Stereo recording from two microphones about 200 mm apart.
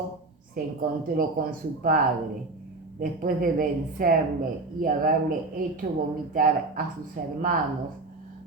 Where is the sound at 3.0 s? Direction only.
45° right (ahead or behind).